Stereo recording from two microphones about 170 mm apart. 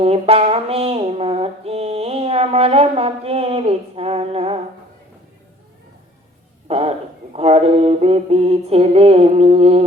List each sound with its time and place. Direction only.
0.0 s mantra: 35° right (ahead or behind)
6.7 s speech: 35° right (ahead or behind)
7.3 s mantra: 35° right (ahead or behind)